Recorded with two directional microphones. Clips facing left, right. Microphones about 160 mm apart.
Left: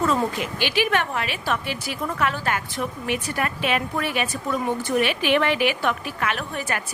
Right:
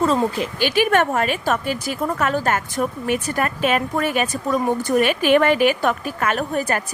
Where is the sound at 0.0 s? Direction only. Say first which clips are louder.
Right 4 dB; 30° right (ahead or behind).